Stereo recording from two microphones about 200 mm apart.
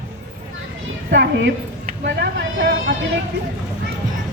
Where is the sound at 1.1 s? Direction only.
55° right (ahead or behind).